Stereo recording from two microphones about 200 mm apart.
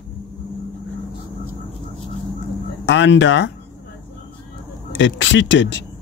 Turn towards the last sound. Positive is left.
turn(degrees=65)  # may be behind; listen again after turning